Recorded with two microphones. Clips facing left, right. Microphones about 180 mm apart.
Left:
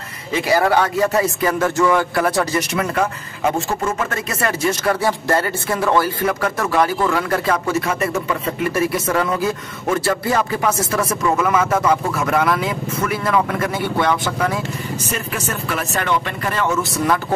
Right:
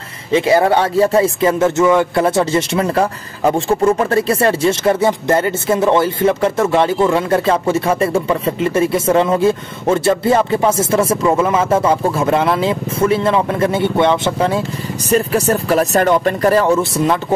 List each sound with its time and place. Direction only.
0.3 s speech: 25° right (ahead or behind)
15.0 s speech: 35° right (ahead or behind)